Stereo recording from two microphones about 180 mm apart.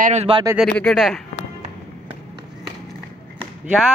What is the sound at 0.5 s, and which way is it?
Speech, centre (ahead or behind).